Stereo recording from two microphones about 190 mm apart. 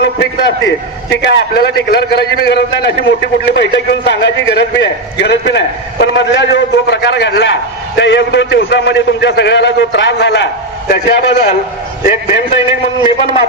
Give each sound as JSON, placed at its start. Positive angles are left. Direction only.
{"t": 0.0, "sound": "a man's voice", "side_deg": 65}